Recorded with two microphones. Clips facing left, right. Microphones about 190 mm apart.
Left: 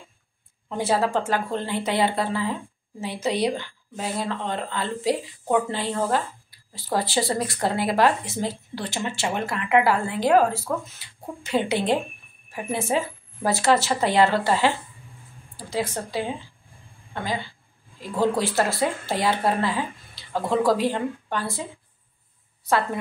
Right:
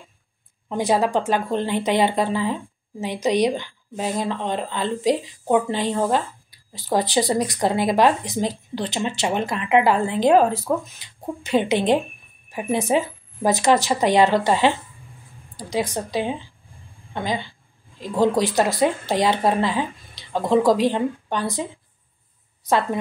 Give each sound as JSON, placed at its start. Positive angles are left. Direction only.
{"t": 0.7, "sound": "speech", "side_deg": -15}